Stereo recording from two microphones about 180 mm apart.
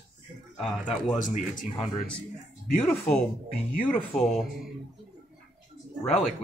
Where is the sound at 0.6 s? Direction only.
Centre (ahead or behind).